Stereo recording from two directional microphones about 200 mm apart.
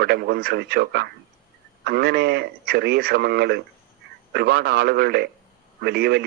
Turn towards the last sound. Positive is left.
turn(degrees=-55)  # may be behind; listen again after turning